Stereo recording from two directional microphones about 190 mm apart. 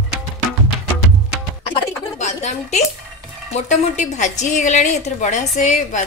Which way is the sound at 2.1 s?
35° left (ahead or behind).